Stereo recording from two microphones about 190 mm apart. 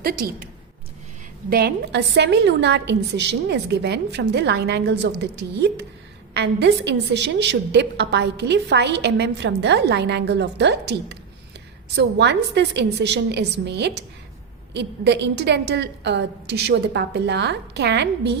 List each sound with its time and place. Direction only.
0.0 s a woman's voice: 55° right (ahead or behind)
1.5 s a woman's voice: 55° right (ahead or behind)